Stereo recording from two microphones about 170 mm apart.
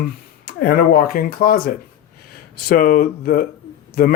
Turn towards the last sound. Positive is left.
turn(degrees=65)  # may be behind; listen again after turning